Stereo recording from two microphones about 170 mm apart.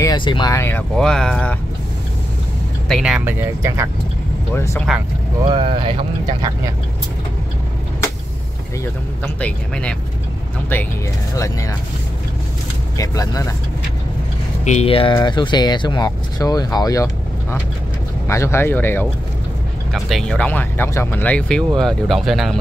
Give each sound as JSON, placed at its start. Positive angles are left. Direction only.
{"t": 0.0, "sound": "speech", "side_deg": 25}
{"t": 2.9, "sound": "speech", "side_deg": -5}
{"t": 4.6, "sound": "speech", "side_deg": 15}
{"t": 5.4, "sound": "speech", "side_deg": -30}
{"t": 9.2, "sound": "speech", "side_deg": 5}
{"t": 11.3, "sound": "speech", "side_deg": 20}
{"t": 12.9, "sound": "speech", "side_deg": 20}
{"t": 14.6, "sound": "speech", "side_deg": 40}
{"t": 19.9, "sound": "speech", "side_deg": 0}